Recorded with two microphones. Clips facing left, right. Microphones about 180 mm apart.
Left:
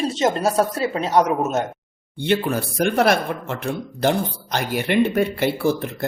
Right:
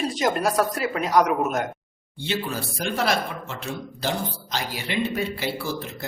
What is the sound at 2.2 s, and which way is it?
Speech, 60° left (ahead or behind).